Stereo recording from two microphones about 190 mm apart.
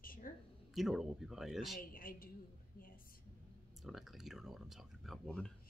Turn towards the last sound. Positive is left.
turn(degrees=5)  # may be behind; listen again after turning